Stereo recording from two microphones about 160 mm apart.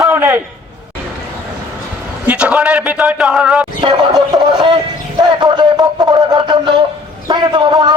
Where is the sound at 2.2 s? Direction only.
5° right (ahead or behind).